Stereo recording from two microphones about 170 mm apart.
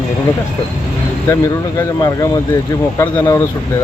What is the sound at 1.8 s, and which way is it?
Speech, 20° left (ahead or behind).